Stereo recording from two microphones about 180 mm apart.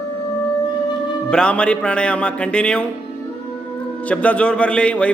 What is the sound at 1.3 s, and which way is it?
A man's voice, 5° left (ahead or behind).